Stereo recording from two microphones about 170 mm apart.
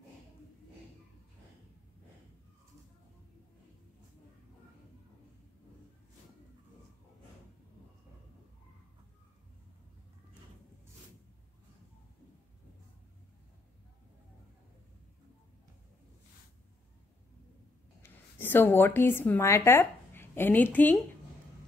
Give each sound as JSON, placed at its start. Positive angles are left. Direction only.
{"t": 18.0, "sound": "a woman's voice", "side_deg": 10}